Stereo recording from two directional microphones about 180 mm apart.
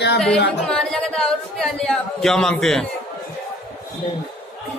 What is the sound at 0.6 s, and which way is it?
Speech, 5° left (ahead or behind).